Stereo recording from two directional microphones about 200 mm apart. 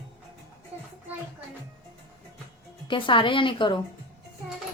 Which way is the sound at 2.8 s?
25° left (ahead or behind).